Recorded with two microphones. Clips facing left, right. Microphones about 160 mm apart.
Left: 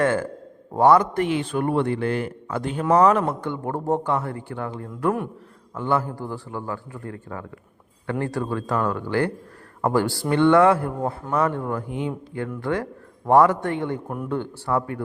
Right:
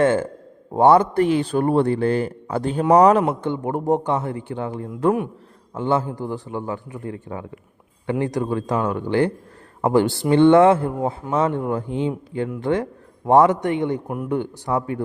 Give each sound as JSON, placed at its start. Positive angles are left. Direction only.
{"t": 0.0, "sound": "a man's voice", "side_deg": -25}
{"t": 3.4, "sound": "a man's voice", "side_deg": -20}